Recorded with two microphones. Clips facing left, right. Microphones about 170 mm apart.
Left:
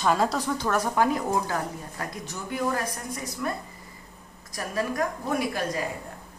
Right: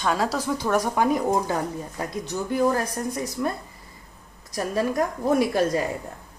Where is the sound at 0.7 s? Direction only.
15° right (ahead or behind).